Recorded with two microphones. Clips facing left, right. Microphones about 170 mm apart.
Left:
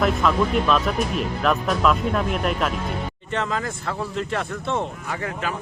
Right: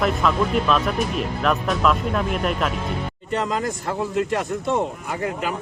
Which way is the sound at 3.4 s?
15° right (ahead or behind).